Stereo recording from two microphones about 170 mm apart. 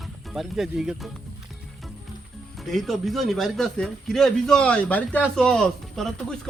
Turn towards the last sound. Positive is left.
turn(degrees=5)  # may be behind; listen again after turning